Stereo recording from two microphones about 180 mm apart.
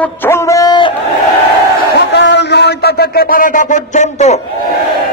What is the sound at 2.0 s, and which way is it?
Speech, 75° left (ahead or behind).